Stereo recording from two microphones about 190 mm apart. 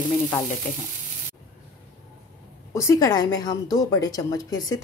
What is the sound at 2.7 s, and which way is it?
A woman's voice, 15° left (ahead or behind).